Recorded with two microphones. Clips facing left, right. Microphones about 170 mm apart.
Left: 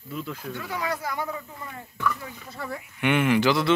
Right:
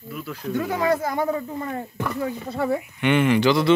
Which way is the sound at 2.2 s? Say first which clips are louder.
Right 13 dB; 35° right (ahead or behind).